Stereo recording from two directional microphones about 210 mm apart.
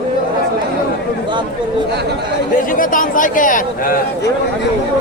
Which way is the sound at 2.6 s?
40° left (ahead or behind).